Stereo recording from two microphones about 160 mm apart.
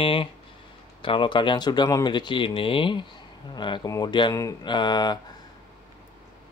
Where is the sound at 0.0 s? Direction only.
35° left (ahead or behind).